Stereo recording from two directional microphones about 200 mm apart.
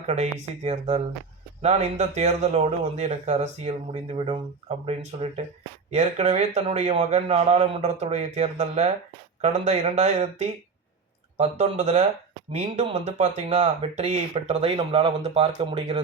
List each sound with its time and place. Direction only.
0.1 s speech: 35° right (ahead or behind)
5.9 s speech: 30° right (ahead or behind)